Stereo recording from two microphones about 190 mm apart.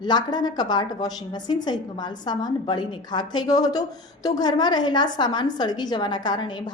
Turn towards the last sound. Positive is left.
turn(degrees=25)  # may be behind; listen again after turning